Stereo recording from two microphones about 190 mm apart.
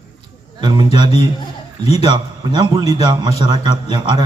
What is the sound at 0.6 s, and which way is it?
A man's voice, 25° right (ahead or behind).